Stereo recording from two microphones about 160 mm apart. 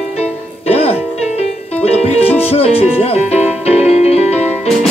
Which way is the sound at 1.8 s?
40° left (ahead or behind).